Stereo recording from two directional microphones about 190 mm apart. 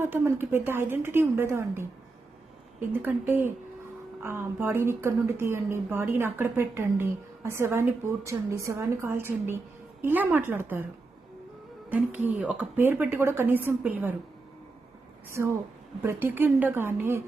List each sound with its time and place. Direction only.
0.0 s a woman's voice: 10° right (ahead or behind)
2.9 s a woman's voice: 10° right (ahead or behind)
11.9 s a woman's voice: 10° right (ahead or behind)
15.3 s a woman's voice: 15° right (ahead or behind)